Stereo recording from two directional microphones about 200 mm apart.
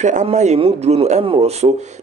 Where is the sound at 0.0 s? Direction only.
35° right (ahead or behind).